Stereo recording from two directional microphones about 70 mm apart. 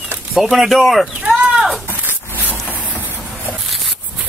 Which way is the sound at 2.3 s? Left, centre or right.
Left.